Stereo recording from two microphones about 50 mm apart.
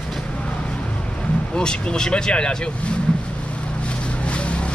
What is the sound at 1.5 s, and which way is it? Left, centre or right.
Speech, centre.